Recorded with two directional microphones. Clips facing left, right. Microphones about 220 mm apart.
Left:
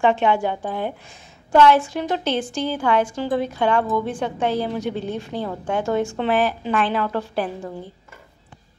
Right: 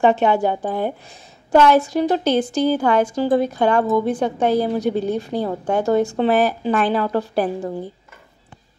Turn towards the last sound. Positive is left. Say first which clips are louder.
# right 5 dB
turn(degrees=-40)  # may be behind; listen again after turning